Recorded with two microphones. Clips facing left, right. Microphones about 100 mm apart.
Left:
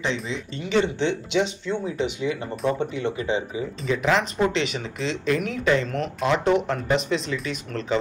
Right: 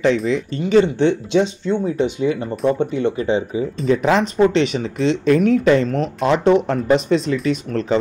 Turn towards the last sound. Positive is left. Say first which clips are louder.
# right 9 dB
turn(degrees=-40)  # may be behind; listen again after turning